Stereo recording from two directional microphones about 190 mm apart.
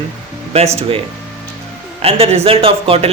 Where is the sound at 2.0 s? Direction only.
30° right (ahead or behind).